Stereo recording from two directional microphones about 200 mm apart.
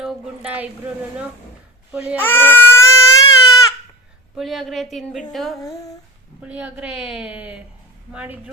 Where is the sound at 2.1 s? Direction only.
10° left (ahead or behind).